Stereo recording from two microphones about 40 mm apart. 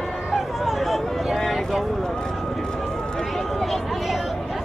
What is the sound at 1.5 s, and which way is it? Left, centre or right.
Speech, centre.